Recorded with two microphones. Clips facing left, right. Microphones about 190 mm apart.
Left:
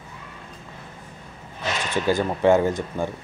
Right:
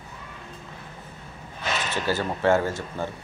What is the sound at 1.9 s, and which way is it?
Speech, 15° left (ahead or behind).